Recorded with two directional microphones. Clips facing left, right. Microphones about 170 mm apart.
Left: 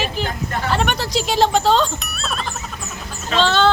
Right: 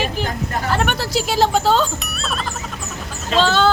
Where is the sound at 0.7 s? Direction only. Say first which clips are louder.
Even; 5° right (ahead or behind).